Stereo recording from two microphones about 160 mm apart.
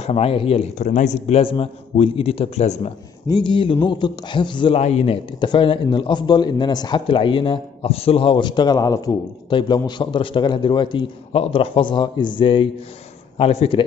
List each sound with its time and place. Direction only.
0.0 s a man's voice: 40° left (ahead or behind)
0.8 s a man's voice: 50° left (ahead or behind)
3.3 s a man's voice: 30° left (ahead or behind)